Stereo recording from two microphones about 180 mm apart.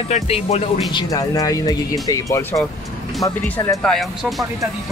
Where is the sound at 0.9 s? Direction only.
20° left (ahead or behind).